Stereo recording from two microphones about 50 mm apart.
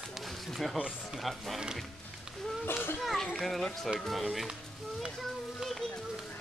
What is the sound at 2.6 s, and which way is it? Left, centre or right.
Speech, left.